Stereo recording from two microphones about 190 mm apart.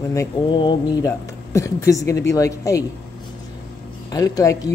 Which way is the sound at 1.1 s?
15° left (ahead or behind).